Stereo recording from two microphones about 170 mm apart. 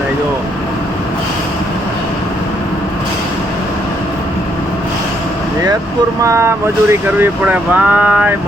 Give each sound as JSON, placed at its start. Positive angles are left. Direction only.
{"t": 6.2, "sound": "speech", "side_deg": -15}